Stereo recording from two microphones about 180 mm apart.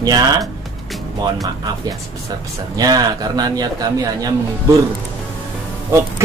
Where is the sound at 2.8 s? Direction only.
20° right (ahead or behind).